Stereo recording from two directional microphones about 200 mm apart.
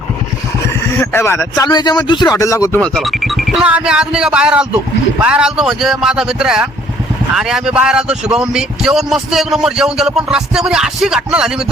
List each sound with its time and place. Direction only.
0.9 s speech: 10° left (ahead or behind)
2.9 s speech: centre (ahead or behind)